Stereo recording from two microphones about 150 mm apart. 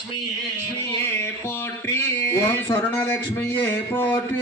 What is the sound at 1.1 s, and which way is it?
Speech, 15° left (ahead or behind).